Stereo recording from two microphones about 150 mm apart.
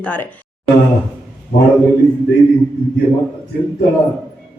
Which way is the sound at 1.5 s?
65° left (ahead or behind).